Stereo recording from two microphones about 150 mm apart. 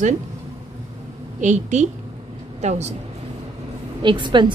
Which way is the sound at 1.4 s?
50° right (ahead or behind).